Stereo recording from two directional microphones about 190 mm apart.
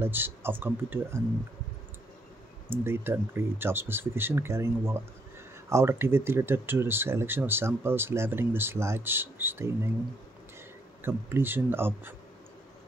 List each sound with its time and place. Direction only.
0.0 s speech: 10° right (ahead or behind)
2.7 s speech: 10° right (ahead or behind)
11.0 s speech: 10° right (ahead or behind)